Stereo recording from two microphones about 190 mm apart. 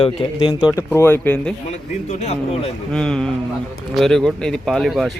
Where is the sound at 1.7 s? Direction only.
35° left (ahead or behind).